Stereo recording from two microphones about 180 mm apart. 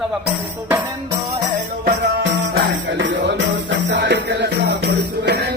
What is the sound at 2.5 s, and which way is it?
Music, 80° right.